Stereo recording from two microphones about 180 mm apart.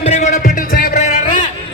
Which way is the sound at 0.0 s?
40° left (ahead or behind).